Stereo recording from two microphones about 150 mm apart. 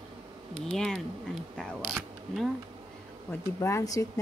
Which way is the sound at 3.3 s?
15° left (ahead or behind).